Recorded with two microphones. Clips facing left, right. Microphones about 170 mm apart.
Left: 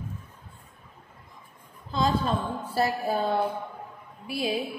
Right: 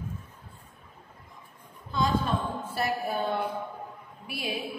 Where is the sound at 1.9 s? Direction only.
35° left (ahead or behind).